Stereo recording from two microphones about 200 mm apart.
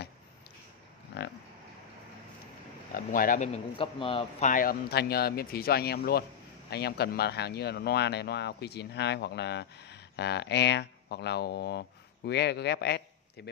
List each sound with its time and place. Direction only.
1.1 s livestock: 55° left (ahead or behind)
2.9 s speech: 45° left (ahead or behind)
3.5 s speech: 25° left (ahead or behind)
4.5 s speech: 45° left (ahead or behind)